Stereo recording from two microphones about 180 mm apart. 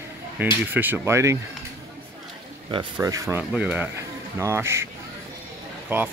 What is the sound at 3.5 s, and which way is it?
Speech, 5° right (ahead or behind).